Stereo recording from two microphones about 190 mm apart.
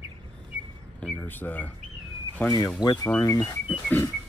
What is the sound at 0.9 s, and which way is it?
Speech, 5° left (ahead or behind).